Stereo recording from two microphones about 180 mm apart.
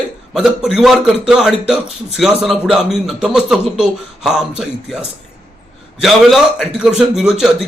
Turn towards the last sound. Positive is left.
turn(degrees=-5)  # may be behind; listen again after turning